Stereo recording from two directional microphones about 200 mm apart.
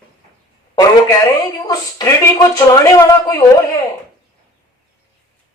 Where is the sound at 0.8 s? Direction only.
20° left (ahead or behind).